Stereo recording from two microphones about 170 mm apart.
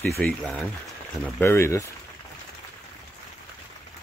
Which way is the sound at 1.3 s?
15° left (ahead or behind).